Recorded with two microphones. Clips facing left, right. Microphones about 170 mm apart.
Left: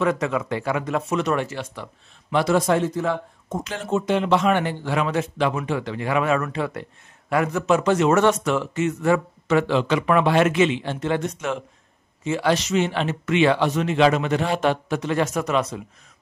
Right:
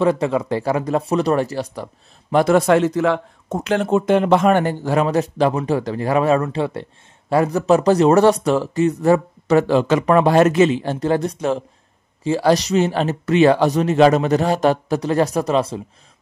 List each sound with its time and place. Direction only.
0.0 s speech: 30° right (ahead or behind)
2.3 s speech: 55° right (ahead or behind); by 15.8 s 30° right (ahead or behind)